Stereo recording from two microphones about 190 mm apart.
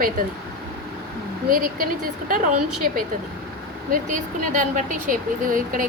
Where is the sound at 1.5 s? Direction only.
45° right (ahead or behind).